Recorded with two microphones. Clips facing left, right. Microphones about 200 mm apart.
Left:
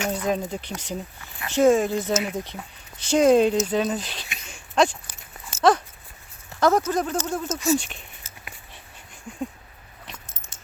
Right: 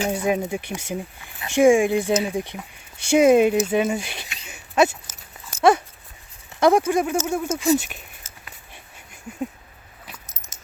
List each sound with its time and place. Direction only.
0.1 s speech: 10° right (ahead or behind)
4.4 s a sound: 5° right (ahead or behind)
6.6 s speech: 10° right (ahead or behind)
10.2 s dog: 40° right (ahead or behind)